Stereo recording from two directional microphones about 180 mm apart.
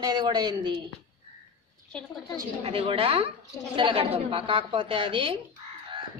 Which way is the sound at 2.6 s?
30° right (ahead or behind).